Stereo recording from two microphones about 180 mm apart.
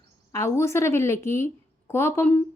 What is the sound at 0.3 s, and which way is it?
A woman's voice, 15° left (ahead or behind).